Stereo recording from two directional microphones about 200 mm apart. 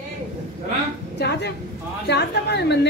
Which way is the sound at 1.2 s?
55° left (ahead or behind).